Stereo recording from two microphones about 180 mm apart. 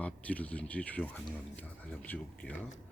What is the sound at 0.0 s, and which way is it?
Speech, 10° left (ahead or behind).